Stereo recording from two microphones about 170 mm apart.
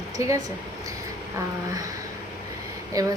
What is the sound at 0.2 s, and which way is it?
Speech, 15° right (ahead or behind).